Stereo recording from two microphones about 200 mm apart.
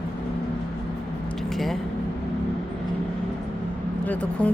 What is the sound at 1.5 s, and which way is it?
Speech, centre (ahead or behind).